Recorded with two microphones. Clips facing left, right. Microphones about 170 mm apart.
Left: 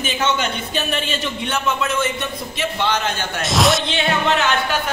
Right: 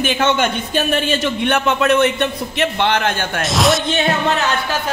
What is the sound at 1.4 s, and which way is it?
A man's voice, 60° right (ahead or behind).